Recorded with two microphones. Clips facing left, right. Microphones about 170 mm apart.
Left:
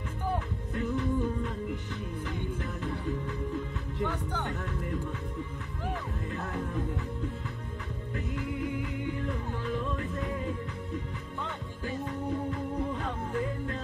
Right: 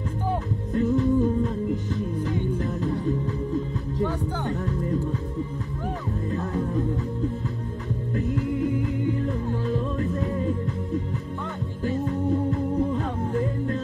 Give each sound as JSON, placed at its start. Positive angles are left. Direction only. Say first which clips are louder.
{"t": 0.7, "sound": "music", "louder": "right 9 dB", "side_deg": -40}
{"t": 6.3, "sound": "music", "louder": "right 8 dB", "side_deg": -35}
{"t": 8.1, "sound": "music", "louder": "right 9 dB", "side_deg": -40}
{"t": 12.0, "sound": "music", "louder": "right 8 dB", "side_deg": -40}